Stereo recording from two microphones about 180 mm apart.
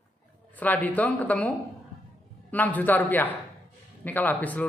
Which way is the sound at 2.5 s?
10° left (ahead or behind).